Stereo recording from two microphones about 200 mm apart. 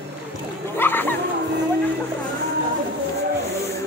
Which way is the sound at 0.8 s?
10° left (ahead or behind).